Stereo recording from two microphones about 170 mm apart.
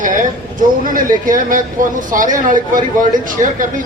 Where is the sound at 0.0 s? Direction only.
50° right (ahead or behind).